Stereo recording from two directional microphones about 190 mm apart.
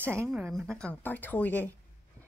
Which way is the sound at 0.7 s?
10° left (ahead or behind).